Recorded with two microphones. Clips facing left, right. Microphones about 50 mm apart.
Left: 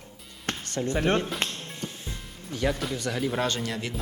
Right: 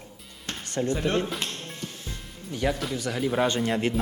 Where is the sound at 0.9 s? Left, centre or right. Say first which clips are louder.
Left 3 dB; left.